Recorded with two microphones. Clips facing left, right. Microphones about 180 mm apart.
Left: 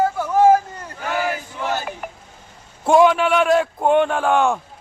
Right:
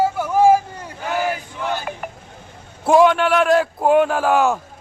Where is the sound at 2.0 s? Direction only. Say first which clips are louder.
Right 1 dB; 50° right (ahead or behind).